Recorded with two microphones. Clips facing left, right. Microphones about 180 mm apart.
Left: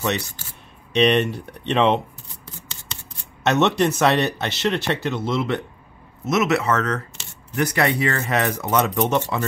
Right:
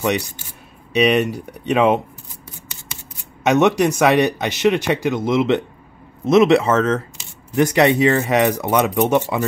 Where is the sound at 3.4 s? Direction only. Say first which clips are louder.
Right 4 dB; 10° right (ahead or behind).